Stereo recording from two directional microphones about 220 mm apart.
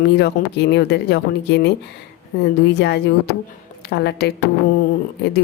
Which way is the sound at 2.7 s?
50° left (ahead or behind).